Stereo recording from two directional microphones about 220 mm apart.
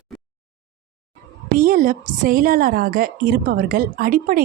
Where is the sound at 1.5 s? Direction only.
40° right (ahead or behind).